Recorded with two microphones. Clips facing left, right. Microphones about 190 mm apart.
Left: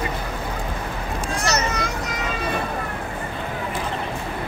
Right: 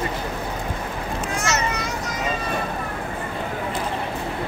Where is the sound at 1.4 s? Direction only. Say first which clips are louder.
Left 2 dB; 40° left (ahead or behind).